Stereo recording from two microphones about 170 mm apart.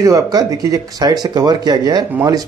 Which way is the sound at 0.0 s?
20° right (ahead or behind).